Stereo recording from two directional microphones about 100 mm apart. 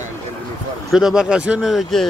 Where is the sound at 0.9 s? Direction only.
5° right (ahead or behind).